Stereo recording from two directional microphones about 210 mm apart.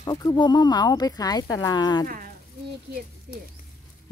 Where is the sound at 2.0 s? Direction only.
40° right (ahead or behind).